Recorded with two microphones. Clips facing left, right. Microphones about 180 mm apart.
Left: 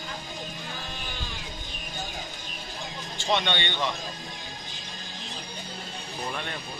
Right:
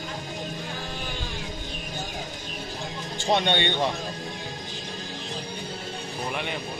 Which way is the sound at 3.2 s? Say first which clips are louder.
Right 4 dB; 50° right (ahead or behind).